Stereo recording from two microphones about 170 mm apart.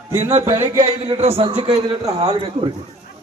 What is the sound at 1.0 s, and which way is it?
A man's voice, 35° right (ahead or behind).